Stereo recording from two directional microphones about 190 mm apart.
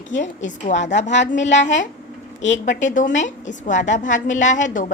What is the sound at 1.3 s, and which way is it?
A child's voice, 70° left (ahead or behind).